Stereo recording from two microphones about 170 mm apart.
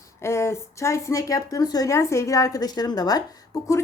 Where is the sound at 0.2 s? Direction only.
15° left (ahead or behind).